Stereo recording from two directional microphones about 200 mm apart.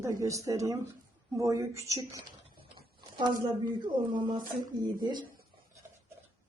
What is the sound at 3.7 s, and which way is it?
Speech, 25° right (ahead or behind).